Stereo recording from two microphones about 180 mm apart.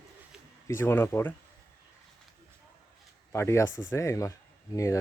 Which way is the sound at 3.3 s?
15° left (ahead or behind).